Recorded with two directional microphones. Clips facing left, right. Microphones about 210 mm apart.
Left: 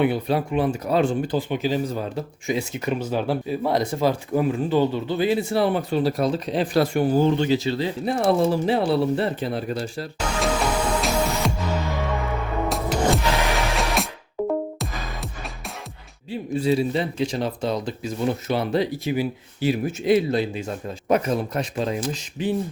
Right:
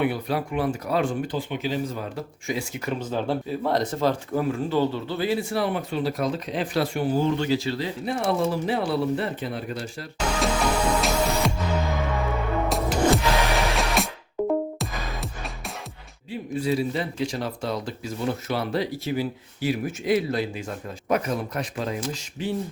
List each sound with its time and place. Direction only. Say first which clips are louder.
0.0 s speech: left 4 dB; 25° left (ahead or behind)
2.1 s speech: left 4 dB; 20° left (ahead or behind)
3.0 s speech: left 2 dB; 10° left (ahead or behind); by 6.8 s 35° left (ahead or behind)
6.8 s speech: left 4 dB; 45° left (ahead or behind)
7.3 s speech: left 3 dB; 20° left (ahead or behind)
8.0 s speech: left 5 dB; 35° left (ahead or behind)
10.2 s music: even; 5° right (ahead or behind)
12.6 s music: even; centre (ahead or behind)
16.3 s speech: left 4 dB; 25° left (ahead or behind)